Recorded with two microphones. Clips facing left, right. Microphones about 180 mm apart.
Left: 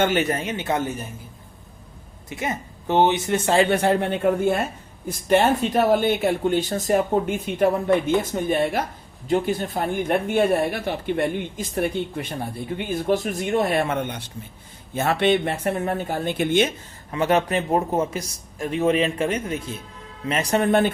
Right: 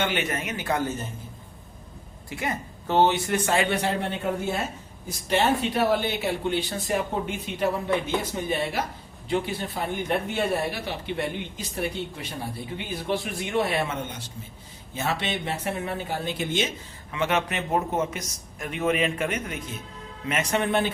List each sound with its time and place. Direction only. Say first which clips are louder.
0.0 s speech: left 6 dB; 45° left (ahead or behind); by 0.9 s 20° left (ahead or behind)
2.3 s speech: left 2 dB; 20° left (ahead or behind)
3.7 s speech: left 6 dB; 50° left (ahead or behind)
17.1 s a man's voice: left 5 dB; 40° left (ahead or behind)